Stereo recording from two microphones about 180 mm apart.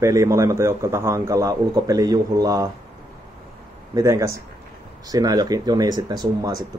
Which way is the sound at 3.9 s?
15° right (ahead or behind).